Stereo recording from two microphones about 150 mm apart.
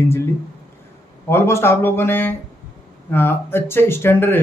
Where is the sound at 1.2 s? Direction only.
15° left (ahead or behind).